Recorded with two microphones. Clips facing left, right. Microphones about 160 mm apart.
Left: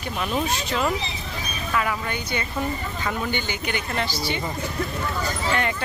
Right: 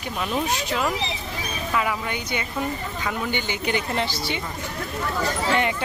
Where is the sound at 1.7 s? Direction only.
15° right (ahead or behind).